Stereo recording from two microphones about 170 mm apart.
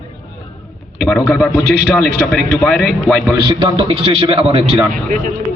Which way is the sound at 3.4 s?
30° right (ahead or behind).